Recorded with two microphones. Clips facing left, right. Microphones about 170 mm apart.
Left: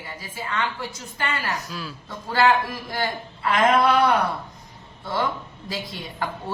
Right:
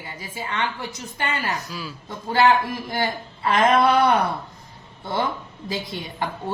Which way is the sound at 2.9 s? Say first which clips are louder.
Right 1 dB; 25° right (ahead or behind).